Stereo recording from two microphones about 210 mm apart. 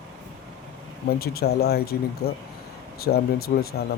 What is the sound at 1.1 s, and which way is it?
Speech, 45° left (ahead or behind).